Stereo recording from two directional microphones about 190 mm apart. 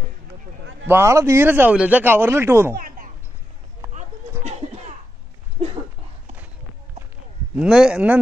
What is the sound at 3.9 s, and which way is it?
Children playing, 40° right (ahead or behind).